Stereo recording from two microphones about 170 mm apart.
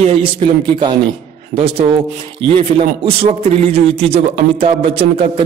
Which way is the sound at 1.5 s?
35° right (ahead or behind).